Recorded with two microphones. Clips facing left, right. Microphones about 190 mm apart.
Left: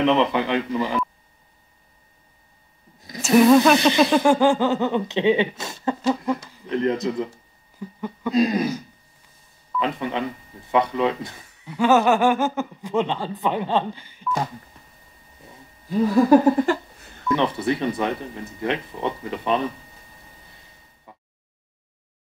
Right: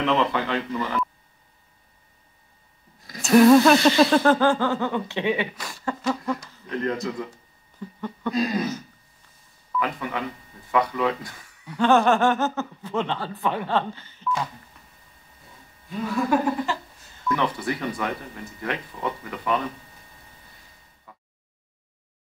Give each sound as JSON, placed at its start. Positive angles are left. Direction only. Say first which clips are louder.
{"t": 0.0, "sound": "speech", "louder": "left 4 dB", "side_deg": 20}
{"t": 3.2, "sound": "music", "louder": "even", "side_deg": 0}
{"t": 3.7, "sound": "speech", "louder": "even", "side_deg": 20}
{"t": 8.3, "sound": "speech", "louder": "left 4 dB", "side_deg": 20}
{"t": 11.7, "sound": "speech", "louder": "left 1 dB", "side_deg": 5}
{"t": 15.9, "sound": "a sound", "louder": "left 8 dB", "side_deg": 35}
{"t": 16.6, "sound": "a sound", "louder": "left 7 dB", "side_deg": 60}
{"t": 17.4, "sound": "speech", "louder": "left 5 dB", "side_deg": 25}